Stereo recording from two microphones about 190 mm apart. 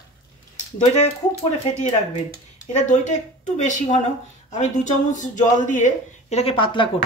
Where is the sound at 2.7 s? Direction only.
40° left (ahead or behind).